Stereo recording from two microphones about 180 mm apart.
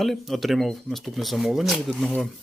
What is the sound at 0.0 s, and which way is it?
Speech, centre (ahead or behind).